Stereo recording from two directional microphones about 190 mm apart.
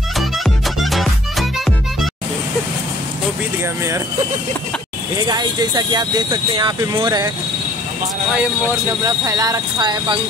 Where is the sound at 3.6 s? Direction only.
15° right (ahead or behind).